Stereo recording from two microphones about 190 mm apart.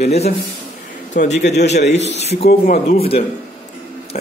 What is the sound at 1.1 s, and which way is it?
A man's voice, 45° left (ahead or behind).